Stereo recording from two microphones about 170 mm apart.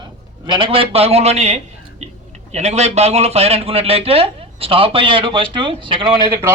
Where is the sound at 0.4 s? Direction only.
30° right (ahead or behind).